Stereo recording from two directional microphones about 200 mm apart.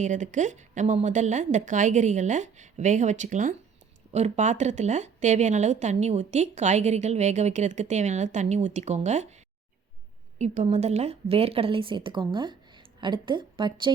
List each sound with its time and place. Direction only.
0.0 s a woman's voice: 40° right (ahead or behind)
10.3 s a woman's voice: 35° right (ahead or behind)